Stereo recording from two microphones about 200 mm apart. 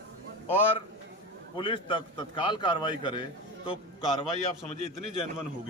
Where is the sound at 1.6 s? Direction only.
25° left (ahead or behind).